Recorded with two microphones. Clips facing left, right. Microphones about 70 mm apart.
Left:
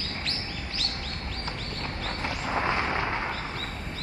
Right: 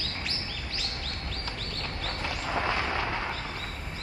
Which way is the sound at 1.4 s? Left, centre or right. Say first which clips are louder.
Left 3 dB; left.